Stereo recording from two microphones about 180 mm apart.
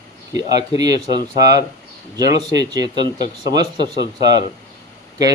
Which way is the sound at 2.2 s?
20° right (ahead or behind).